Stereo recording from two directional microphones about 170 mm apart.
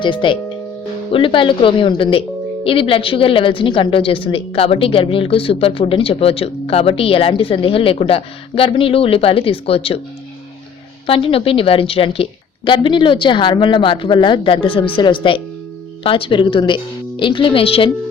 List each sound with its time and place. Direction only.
0.0 s a woman's voice: 30° left (ahead or behind)
11.0 s a woman's voice: 35° left (ahead or behind)